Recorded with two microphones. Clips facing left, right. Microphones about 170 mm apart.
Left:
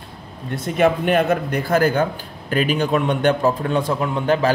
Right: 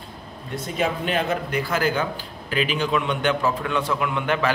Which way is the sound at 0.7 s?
60° left (ahead or behind).